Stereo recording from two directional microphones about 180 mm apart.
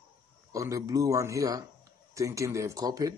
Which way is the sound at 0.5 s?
20° right (ahead or behind).